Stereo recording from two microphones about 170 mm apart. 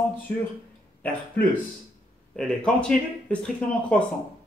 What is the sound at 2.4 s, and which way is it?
Speech, 5° left (ahead or behind).